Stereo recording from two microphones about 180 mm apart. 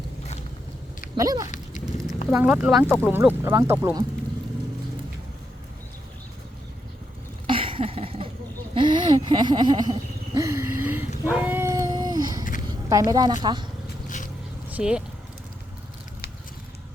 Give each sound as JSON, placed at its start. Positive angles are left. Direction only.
{"t": 1.1, "sound": "speech", "side_deg": -20}
{"t": 2.3, "sound": "speech", "side_deg": -10}
{"t": 7.4, "sound": "a sound", "side_deg": -30}
{"t": 13.4, "sound": "speech", "side_deg": -25}
{"t": 14.7, "sound": "speech", "side_deg": -5}